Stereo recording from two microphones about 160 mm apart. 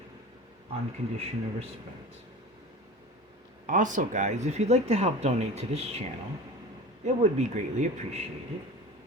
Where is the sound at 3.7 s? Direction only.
55° right (ahead or behind).